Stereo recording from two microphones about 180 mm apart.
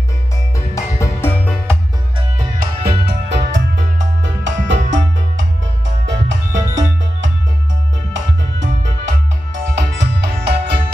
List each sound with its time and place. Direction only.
0.7 s music: 15° left (ahead or behind)
2.3 s music: 55° right (ahead or behind); by 4.7 s 90° right
6.0 s music: 90° right; by 10.8 s 70° right (ahead or behind)